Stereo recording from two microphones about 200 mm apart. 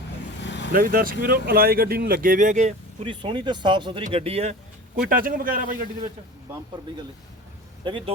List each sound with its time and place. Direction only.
0.4 s vehicle: 60° left (ahead or behind)
0.7 s speech: 45° right (ahead or behind); by 4.5 s 30° right (ahead or behind)
4.9 s speech: 45° right (ahead or behind)
7.9 s speech: 25° right (ahead or behind)